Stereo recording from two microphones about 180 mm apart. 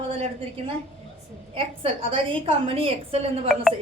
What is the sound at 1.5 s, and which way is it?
A woman's voice, 30° right (ahead or behind).